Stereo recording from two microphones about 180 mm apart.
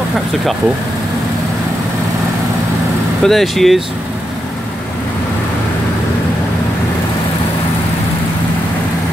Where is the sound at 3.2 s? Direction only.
Centre (ahead or behind).